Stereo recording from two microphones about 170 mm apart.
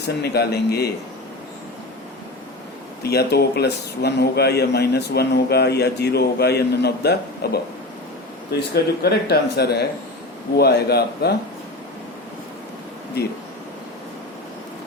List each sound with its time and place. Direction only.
0.2 s speech: 70° left (ahead or behind)
3.0 s speech: 70° left (ahead or behind)
13.2 s speech: 70° left (ahead or behind)